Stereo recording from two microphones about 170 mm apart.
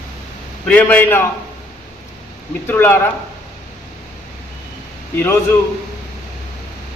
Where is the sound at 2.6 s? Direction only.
15° left (ahead or behind).